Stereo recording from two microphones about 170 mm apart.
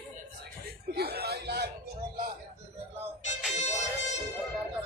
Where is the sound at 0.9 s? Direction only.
70° right (ahead or behind).